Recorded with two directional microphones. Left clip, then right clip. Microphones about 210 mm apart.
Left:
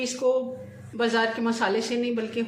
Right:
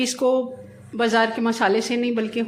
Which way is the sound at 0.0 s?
35° right (ahead or behind).